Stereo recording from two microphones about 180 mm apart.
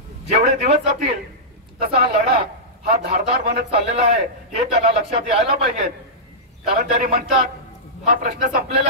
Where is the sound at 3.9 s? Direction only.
40° right (ahead or behind).